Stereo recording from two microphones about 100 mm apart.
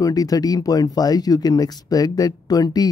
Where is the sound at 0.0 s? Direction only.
40° left (ahead or behind).